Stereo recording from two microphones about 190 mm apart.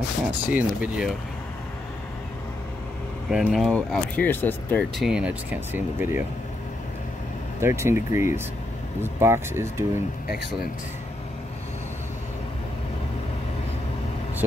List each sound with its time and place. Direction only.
0.5 s speech: 5° right (ahead or behind)
3.3 s speech: 5° right (ahead or behind)
4.9 s speech: 5° right (ahead or behind)
7.6 s speech: 15° right (ahead or behind)
10.3 s speech: 50° left (ahead or behind)